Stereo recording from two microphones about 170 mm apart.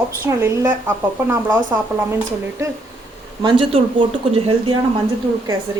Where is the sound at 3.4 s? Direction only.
30° right (ahead or behind).